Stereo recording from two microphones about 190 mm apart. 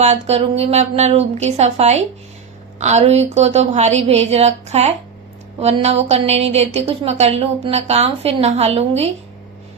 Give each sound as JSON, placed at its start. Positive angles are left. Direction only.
{"t": 0.0, "sound": "a woman's voice", "side_deg": -35}